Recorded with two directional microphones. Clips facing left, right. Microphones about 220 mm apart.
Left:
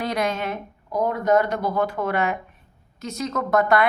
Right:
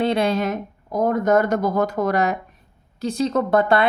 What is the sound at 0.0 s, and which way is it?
A woman's voice, 30° right (ahead or behind).